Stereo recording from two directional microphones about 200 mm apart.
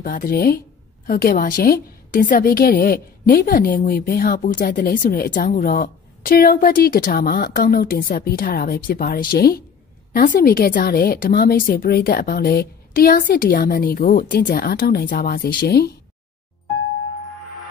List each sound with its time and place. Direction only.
0.0 s a woman's voice: 45° left (ahead or behind)